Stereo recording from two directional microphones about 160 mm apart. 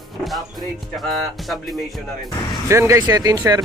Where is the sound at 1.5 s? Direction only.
Centre (ahead or behind).